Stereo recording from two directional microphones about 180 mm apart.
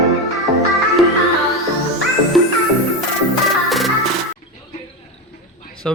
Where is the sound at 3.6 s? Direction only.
Centre (ahead or behind).